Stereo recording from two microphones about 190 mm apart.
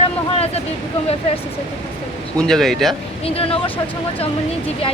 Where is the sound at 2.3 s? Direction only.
5° left (ahead or behind).